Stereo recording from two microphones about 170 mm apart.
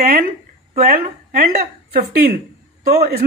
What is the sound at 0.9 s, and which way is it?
Speech, 60° right (ahead or behind).